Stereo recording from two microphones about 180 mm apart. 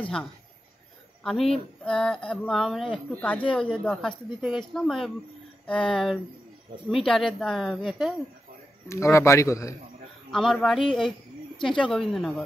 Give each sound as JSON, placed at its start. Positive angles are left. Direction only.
{"t": 1.2, "sound": "speech", "side_deg": 0}
{"t": 8.8, "sound": "a man's voice", "side_deg": 15}
{"t": 10.3, "sound": "speech", "side_deg": 0}